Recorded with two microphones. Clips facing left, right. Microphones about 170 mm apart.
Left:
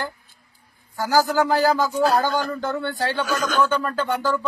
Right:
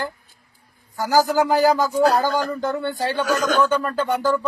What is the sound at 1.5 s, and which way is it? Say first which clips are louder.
Speech: right 2 dB; 15° right (ahead or behind).